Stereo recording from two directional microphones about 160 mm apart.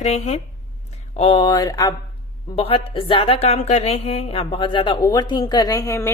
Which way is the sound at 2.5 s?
35° left (ahead or behind).